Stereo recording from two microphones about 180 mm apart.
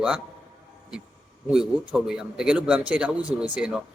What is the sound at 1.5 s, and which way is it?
A man's voice, 5° right (ahead or behind).